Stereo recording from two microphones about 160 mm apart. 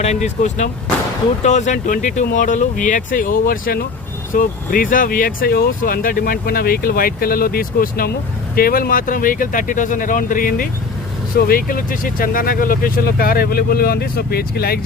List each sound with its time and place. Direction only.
0.0 s speech: 45° left (ahead or behind); by 3.8 s 70° left (ahead or behind)
4.4 s speech: 60° left (ahead or behind); by 14.8 s 75° left (ahead or behind)